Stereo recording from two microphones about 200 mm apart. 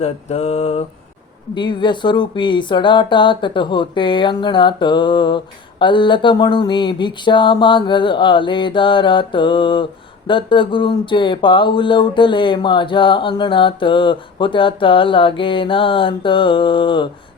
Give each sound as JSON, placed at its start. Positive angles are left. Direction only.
{"t": 0.0, "sound": "mantra", "side_deg": 30}
{"t": 1.5, "sound": "speech", "side_deg": 25}